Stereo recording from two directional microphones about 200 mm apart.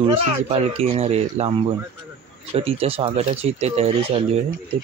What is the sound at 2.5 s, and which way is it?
Speech, 30° right (ahead or behind).